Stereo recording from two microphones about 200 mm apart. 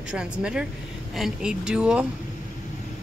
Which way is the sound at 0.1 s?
5° right (ahead or behind).